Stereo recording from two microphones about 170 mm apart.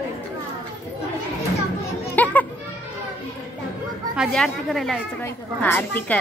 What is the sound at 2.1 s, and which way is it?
Music, 10° left (ahead or behind).